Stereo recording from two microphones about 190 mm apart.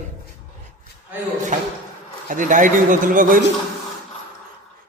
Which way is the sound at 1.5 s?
40° right (ahead or behind).